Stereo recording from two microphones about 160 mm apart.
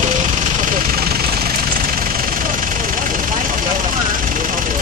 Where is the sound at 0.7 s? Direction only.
70° right (ahead or behind).